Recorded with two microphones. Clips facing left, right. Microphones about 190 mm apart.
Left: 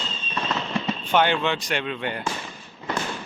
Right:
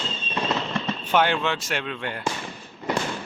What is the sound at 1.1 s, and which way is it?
Speech, 5° right (ahead or behind).